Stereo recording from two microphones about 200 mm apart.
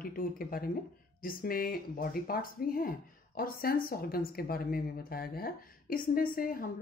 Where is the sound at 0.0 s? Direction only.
45° left (ahead or behind).